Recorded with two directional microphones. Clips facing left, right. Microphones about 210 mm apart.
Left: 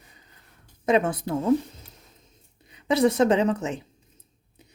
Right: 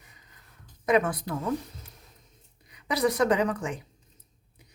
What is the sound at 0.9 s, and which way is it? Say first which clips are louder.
Speech: left 2 dB; 25° left (ahead or behind).